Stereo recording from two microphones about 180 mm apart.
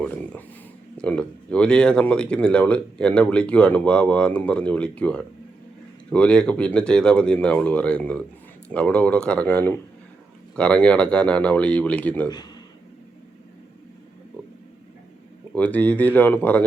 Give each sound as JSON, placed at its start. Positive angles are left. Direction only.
{"t": 0.9, "sound": "speech", "side_deg": 5}
{"t": 15.5, "sound": "speech", "side_deg": 10}